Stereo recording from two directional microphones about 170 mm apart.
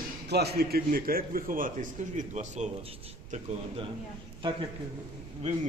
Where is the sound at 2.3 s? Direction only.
45° right (ahead or behind).